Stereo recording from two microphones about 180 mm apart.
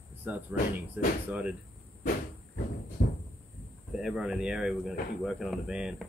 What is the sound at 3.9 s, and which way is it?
Speech, 5° right (ahead or behind).